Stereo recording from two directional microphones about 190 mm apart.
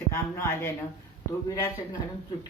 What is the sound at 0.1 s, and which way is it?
Speech, 15° left (ahead or behind).